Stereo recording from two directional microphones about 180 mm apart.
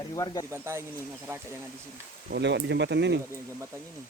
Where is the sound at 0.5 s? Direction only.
15° right (ahead or behind).